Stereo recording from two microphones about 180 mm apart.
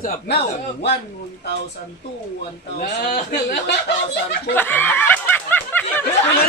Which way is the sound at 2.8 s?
60° left (ahead or behind).